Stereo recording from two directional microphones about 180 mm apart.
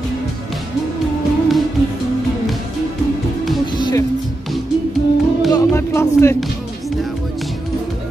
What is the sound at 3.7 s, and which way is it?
Music, 25° left (ahead or behind).